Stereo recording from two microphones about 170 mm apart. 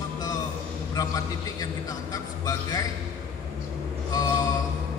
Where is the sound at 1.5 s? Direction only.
20° left (ahead or behind).